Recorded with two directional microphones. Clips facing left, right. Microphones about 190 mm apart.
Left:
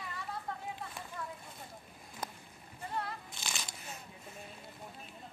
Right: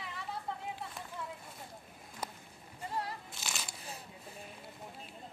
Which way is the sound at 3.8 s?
35° right (ahead or behind).